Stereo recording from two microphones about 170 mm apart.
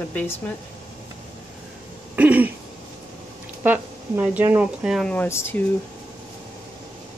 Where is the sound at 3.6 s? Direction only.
10° right (ahead or behind).